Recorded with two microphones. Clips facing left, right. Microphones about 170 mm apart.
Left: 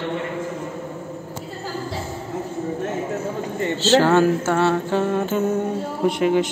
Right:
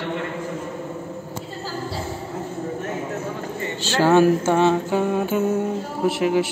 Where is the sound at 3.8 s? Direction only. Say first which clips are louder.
Even; 10° right (ahead or behind).